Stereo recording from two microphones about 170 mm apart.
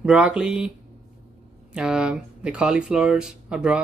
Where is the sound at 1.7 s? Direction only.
5° right (ahead or behind).